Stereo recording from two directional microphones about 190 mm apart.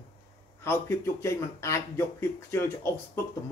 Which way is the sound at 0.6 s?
15° left (ahead or behind).